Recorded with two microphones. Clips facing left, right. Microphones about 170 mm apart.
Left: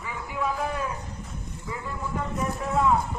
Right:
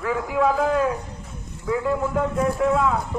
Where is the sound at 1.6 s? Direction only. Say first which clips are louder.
Right 13 dB; 90° right.